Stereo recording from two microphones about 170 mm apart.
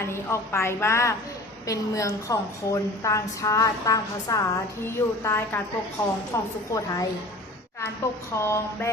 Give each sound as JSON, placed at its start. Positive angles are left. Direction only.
{"t": 0.0, "sound": "a woman's voice", "side_deg": 15}
{"t": 8.4, "sound": "a woman's voice", "side_deg": 15}